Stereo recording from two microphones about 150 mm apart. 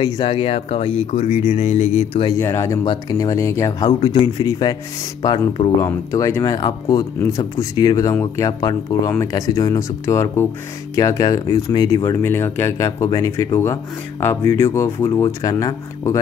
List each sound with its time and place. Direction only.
0.0 s speech: 35° left (ahead or behind)
2.3 s speech: 20° left (ahead or behind)
4.1 s speech: 30° left (ahead or behind)